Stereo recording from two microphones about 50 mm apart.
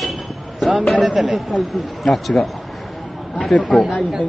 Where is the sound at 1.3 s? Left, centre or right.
Centre.